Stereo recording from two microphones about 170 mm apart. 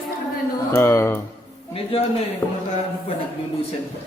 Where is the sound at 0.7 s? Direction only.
15° left (ahead or behind).